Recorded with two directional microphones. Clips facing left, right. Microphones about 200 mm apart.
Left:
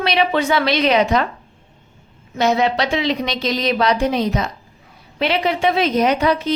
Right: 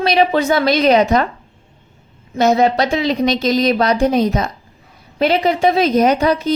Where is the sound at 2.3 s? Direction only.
45° right (ahead or behind).